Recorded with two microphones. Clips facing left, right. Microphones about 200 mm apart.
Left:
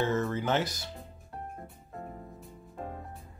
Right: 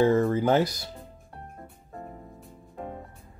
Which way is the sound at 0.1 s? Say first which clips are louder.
Right 7 dB; 35° right (ahead or behind).